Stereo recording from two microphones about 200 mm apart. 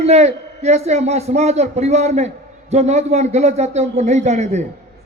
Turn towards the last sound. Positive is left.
turn(degrees=-35)  # may be behind; listen again after turning